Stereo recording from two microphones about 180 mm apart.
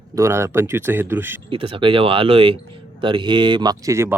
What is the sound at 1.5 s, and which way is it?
Speech, 30° right (ahead or behind).